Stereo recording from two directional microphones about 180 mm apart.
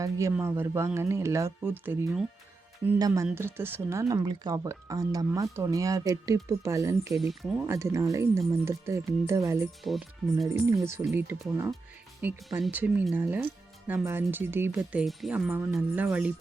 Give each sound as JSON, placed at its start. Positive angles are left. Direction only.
{"t": 0.0, "sound": "speech", "side_deg": -15}
{"t": 7.1, "sound": "speech", "side_deg": 0}
{"t": 7.7, "sound": "speech", "side_deg": -15}
{"t": 9.8, "sound": "speech", "side_deg": 0}
{"t": 11.1, "sound": "speech", "side_deg": -15}
{"t": 14.8, "sound": "speech", "side_deg": 0}